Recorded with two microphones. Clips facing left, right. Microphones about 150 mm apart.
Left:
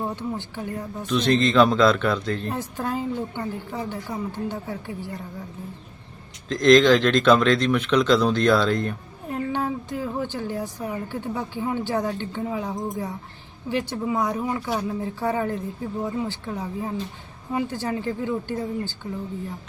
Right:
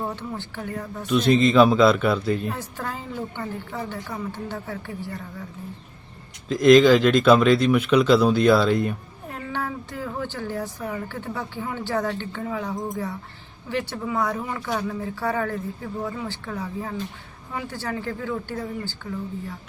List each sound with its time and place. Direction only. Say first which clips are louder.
0.0 s a woman's voice: left 2 dB; 15° left (ahead or behind)
1.0 s speech: right 2 dB; 10° right (ahead or behind)
2.5 s a woman's voice: left 3 dB; 15° left (ahead or behind)
6.5 s speech: right 2 dB; 5° right (ahead or behind)
9.3 s a woman's voice: left 4 dB; 20° left (ahead or behind)